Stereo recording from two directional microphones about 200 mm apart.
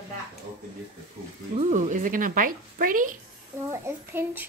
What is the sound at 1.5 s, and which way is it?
A woman's voice, 35° right (ahead or behind).